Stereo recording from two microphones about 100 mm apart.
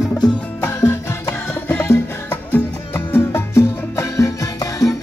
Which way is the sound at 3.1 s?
25° left (ahead or behind).